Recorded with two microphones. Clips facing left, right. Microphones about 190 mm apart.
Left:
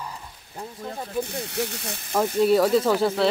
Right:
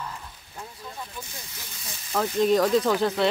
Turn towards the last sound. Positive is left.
turn(degrees=10)  # may be behind; listen again after turning